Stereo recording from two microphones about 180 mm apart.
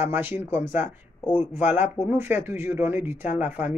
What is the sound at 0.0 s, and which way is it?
Speech, 10° right (ahead or behind).